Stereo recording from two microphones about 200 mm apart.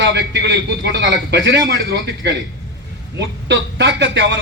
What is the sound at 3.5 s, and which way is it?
Speech, 60° right (ahead or behind).